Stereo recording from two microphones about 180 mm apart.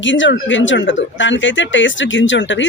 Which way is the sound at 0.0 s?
90° left.